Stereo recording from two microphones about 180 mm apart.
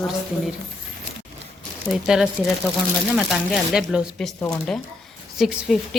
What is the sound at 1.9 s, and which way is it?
Speech, centre (ahead or behind).